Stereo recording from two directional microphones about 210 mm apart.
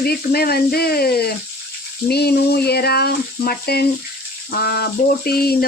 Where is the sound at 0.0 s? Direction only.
45° left (ahead or behind).